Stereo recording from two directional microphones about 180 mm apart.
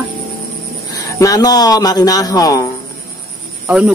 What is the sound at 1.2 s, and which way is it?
Speech, 20° left (ahead or behind).